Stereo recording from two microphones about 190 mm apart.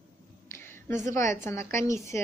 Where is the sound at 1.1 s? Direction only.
15° left (ahead or behind).